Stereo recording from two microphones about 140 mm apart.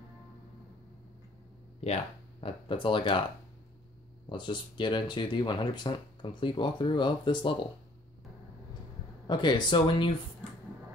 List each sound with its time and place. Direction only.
1.8 s speech: 45° left (ahead or behind)
4.3 s speech: 35° left (ahead or behind)
9.3 s speech: 30° left (ahead or behind)